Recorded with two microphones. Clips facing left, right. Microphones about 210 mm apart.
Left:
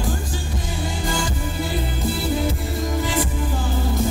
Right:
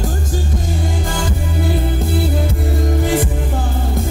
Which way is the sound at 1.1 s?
50° right (ahead or behind).